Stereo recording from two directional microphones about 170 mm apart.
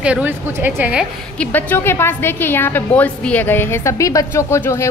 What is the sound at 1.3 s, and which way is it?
A woman's voice, 10° left (ahead or behind).